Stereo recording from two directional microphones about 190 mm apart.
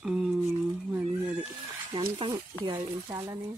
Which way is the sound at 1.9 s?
25° right (ahead or behind).